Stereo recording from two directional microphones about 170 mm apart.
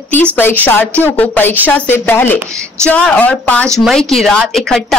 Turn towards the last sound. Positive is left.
turn(degrees=5)  # may be behind; listen again after turning